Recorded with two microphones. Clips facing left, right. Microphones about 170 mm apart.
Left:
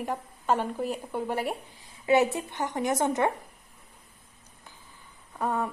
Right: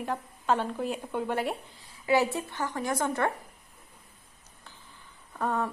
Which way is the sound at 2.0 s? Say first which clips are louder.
Left 2 dB; 20° left (ahead or behind).